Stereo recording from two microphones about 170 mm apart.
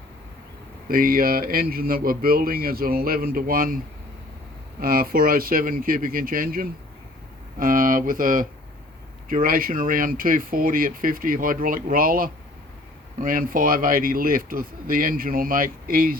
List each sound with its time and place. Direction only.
0.9 s speech: 55° right (ahead or behind)
4.8 s speech: 60° right (ahead or behind)